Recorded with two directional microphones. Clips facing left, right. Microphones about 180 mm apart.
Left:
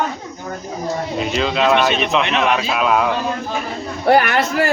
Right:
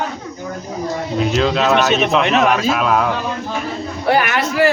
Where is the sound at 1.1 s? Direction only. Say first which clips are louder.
Right 4 dB; centre (ahead or behind).